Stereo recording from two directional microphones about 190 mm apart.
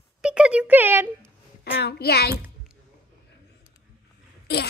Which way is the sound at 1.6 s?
55° left (ahead or behind).